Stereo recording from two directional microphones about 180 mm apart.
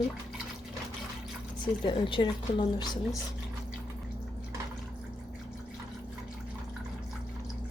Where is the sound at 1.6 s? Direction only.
25° left (ahead or behind).